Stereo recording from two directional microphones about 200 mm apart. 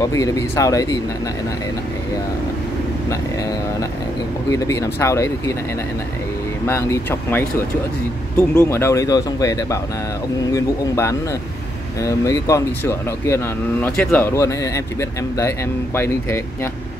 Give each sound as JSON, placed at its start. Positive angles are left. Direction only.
{"t": 0.0, "sound": "speech", "side_deg": 15}
{"t": 4.5, "sound": "speech", "side_deg": 15}
{"t": 6.6, "sound": "speech", "side_deg": 15}